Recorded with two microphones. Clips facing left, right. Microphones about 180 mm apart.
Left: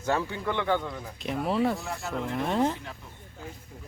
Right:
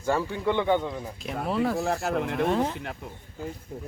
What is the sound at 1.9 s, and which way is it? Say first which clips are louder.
Speech: right 5 dB; 65° right (ahead or behind).